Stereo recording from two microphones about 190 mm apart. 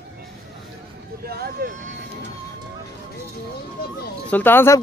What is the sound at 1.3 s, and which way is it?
Vehicle, 55° right (ahead or behind).